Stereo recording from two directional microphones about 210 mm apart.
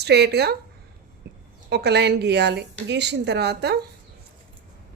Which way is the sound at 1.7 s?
50° right (ahead or behind).